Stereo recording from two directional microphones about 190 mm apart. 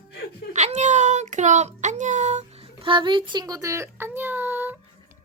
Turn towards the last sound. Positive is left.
turn(degrees=-10)  # may be behind; listen again after turning